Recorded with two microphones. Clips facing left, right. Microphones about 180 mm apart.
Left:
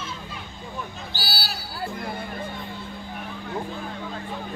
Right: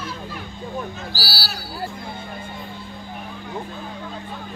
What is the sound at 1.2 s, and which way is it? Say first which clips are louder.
Speech: left 3 dB; centre (ahead or behind).